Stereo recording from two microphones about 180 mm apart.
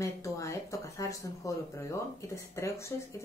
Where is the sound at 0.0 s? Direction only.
15° left (ahead or behind).